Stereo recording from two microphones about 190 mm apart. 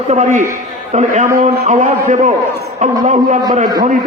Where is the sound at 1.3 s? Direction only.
55° right (ahead or behind).